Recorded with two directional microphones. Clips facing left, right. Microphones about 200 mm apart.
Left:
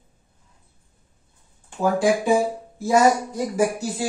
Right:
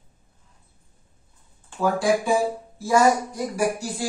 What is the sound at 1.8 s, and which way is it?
Speech, 20° left (ahead or behind).